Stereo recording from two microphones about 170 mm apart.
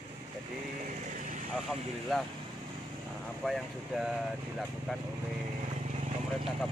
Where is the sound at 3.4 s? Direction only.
Centre (ahead or behind).